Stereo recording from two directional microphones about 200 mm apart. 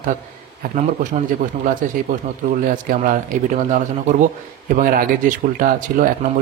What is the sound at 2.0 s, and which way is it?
Speech, 45° right (ahead or behind).